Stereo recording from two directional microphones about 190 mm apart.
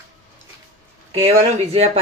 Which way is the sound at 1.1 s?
35° right (ahead or behind).